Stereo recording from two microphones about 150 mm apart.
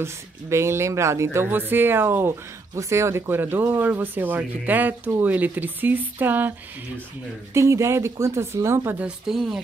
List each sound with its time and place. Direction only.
0.0 s speech: 15° right (ahead or behind)
7.5 s speech: 20° right (ahead or behind)
9.0 s speech: centre (ahead or behind)